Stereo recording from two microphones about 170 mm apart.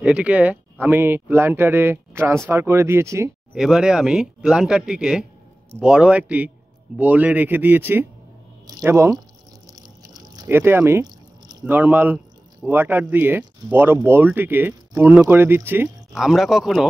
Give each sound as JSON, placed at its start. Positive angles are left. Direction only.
{"t": 0.0, "sound": "speech", "side_deg": -10}
{"t": 3.5, "sound": "speech", "side_deg": -5}
{"t": 9.7, "sound": "a sound", "side_deg": -20}
{"t": 12.6, "sound": "speech", "side_deg": -10}
{"t": 16.1, "sound": "speech", "side_deg": 0}